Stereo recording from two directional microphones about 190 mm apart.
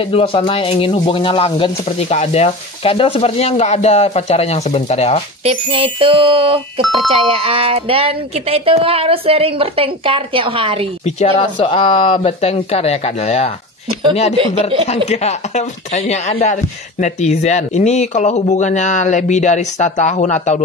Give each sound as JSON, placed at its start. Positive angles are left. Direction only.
{"t": 0.1, "sound": "speech", "side_deg": 30}
{"t": 5.4, "sound": "speech", "side_deg": -30}
{"t": 6.8, "sound": "speech", "side_deg": 0}
{"t": 7.1, "sound": "speech", "side_deg": -30}
{"t": 11.1, "sound": "speech", "side_deg": 35}
{"t": 14.9, "sound": "speech", "side_deg": 35}